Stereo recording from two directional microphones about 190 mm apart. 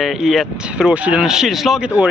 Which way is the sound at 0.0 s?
Centre (ahead or behind).